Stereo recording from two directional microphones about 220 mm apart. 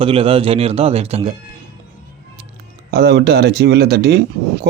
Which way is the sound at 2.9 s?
45° right (ahead or behind).